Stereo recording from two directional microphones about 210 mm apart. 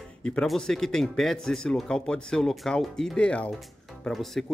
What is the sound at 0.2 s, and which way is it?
Speech, 5° left (ahead or behind).